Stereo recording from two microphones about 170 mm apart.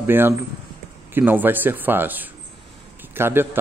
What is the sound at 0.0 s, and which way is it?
Speech, 10° right (ahead or behind).